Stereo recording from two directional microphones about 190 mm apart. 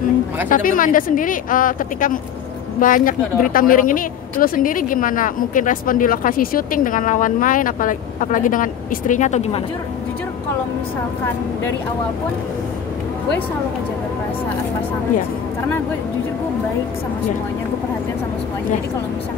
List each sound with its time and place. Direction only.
0.5 s speech: 45° left (ahead or behind)